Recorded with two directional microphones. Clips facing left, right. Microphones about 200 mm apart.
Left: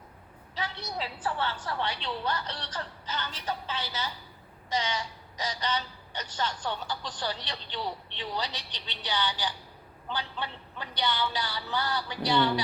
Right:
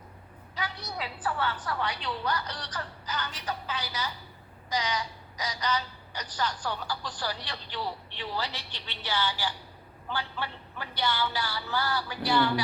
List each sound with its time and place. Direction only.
0.5 s a woman's voice: 25° left (ahead or behind)